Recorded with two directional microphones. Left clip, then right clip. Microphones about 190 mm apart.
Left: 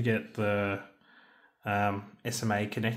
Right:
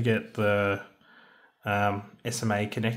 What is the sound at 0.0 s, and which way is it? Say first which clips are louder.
Speech: right 4 dB; 15° right (ahead or behind).